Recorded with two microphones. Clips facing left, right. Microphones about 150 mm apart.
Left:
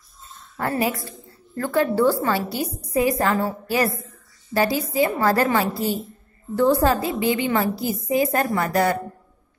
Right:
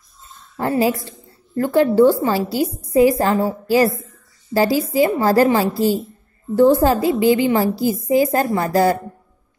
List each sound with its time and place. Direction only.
0.6 s a woman's voice: 30° right (ahead or behind)